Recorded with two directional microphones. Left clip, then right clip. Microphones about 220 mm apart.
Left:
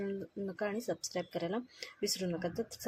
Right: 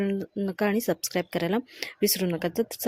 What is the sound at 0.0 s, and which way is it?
Speech, 35° right (ahead or behind).